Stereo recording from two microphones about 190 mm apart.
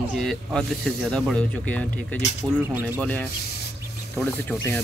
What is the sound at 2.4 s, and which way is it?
Speech, 20° right (ahead or behind).